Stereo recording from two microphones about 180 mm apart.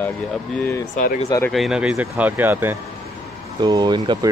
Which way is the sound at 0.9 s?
50° left (ahead or behind).